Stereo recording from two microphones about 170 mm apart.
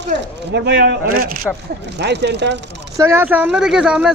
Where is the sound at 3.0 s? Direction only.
15° right (ahead or behind).